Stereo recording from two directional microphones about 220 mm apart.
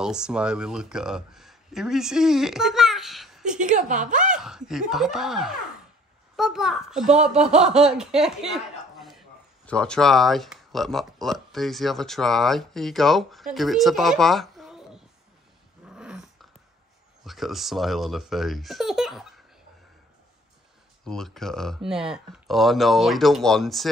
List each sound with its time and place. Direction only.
0.0 s speech: 5° right (ahead or behind)
3.5 s a woman's voice: 35° right (ahead or behind)
4.3 s speech: 5° right (ahead or behind)
7.3 s speech: 30° right (ahead or behind)
7.6 s speech: 5° right (ahead or behind)
15.8 s dog: 5° right (ahead or behind)
17.2 s speech: centre (ahead or behind)
21.0 s speech: centre (ahead or behind)